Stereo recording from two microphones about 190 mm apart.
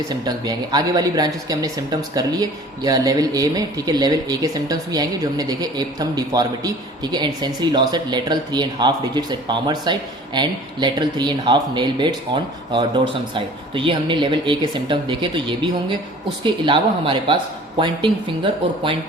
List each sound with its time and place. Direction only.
0.1 s speech: 20° right (ahead or behind)